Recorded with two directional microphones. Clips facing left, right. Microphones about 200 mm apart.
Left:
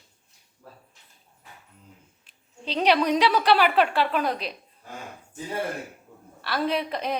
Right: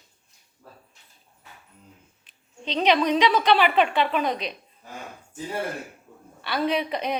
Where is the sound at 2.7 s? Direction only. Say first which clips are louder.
Even; 5° left (ahead or behind).